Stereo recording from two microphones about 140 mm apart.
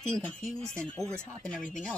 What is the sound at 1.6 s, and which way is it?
Chopping, 65° left (ahead or behind).